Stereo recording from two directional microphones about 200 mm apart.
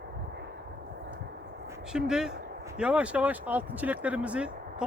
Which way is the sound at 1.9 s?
5° right (ahead or behind).